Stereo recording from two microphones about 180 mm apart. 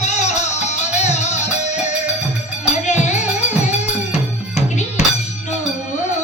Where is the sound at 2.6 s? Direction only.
40° left (ahead or behind).